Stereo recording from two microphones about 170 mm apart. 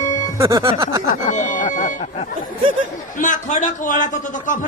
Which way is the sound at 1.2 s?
45° left (ahead or behind).